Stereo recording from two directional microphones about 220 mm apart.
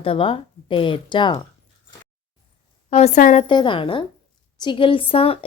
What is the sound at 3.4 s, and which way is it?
A woman's voice, 20° left (ahead or behind).